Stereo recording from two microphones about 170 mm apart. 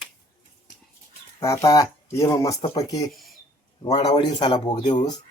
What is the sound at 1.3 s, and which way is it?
Speech, 15° left (ahead or behind).